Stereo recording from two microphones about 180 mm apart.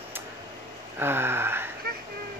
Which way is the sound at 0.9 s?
10° right (ahead or behind).